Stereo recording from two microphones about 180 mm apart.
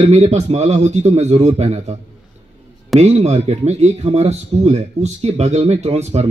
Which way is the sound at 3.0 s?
40° right (ahead or behind).